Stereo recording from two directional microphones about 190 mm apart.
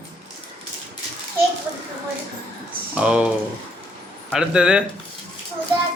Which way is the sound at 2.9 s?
5° right (ahead or behind).